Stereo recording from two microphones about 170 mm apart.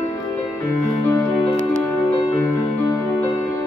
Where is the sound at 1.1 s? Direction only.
10° left (ahead or behind).